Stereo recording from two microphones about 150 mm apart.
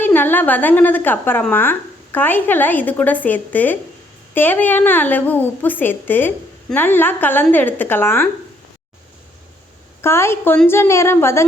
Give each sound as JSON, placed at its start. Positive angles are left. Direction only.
{"t": 0.0, "sound": "a woman's voice", "side_deg": 15}
{"t": 10.0, "sound": "a woman's voice", "side_deg": 15}